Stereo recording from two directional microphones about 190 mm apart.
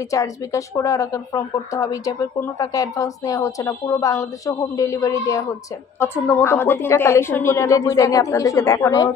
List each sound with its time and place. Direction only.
0.1 s speech: 15° left (ahead or behind)